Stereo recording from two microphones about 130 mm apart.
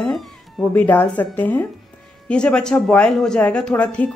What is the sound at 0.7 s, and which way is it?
A woman's voice, 15° left (ahead or behind).